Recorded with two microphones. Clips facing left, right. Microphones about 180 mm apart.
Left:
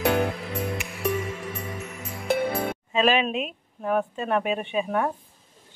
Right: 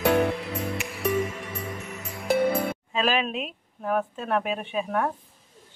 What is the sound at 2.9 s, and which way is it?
Speech, centre (ahead or behind).